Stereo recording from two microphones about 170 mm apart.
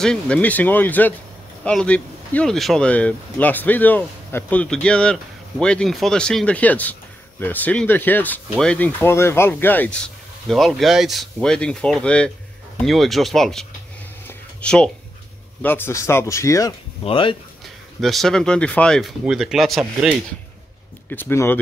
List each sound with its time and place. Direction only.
0.0 s speech: 5° left (ahead or behind)
14.2 s a sound: 5° left (ahead or behind)
15.6 s speech: 10° left (ahead or behind)
17.0 s speech: 30° left (ahead or behind)
18.0 s speech: centre (ahead or behind)
21.1 s speech: 15° left (ahead or behind)